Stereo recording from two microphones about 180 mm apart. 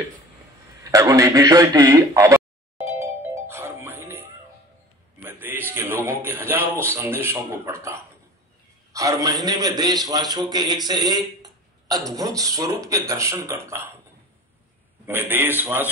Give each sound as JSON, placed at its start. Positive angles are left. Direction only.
{"t": 0.9, "sound": "a sound", "side_deg": -20}
{"t": 5.2, "sound": "music", "side_deg": -10}
{"t": 5.7, "sound": "a man's voice", "side_deg": -15}
{"t": 15.0, "sound": "speech", "side_deg": -10}